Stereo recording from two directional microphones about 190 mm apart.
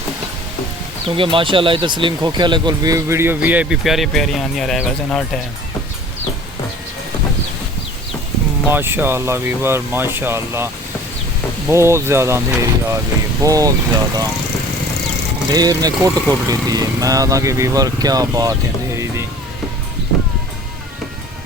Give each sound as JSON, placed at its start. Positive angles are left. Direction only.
{"t": 1.0, "sound": "speech", "side_deg": -25}
{"t": 8.7, "sound": "speech", "side_deg": -10}
{"t": 11.7, "sound": "speech", "side_deg": -15}
{"t": 15.5, "sound": "speech", "side_deg": -20}